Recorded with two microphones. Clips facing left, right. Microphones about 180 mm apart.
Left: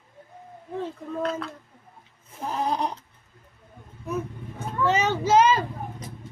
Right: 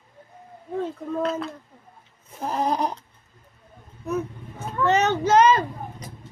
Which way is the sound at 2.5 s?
40° right (ahead or behind).